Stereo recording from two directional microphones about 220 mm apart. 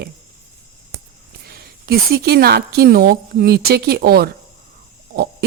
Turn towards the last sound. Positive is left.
turn(degrees=-45)  # may be behind; listen again after turning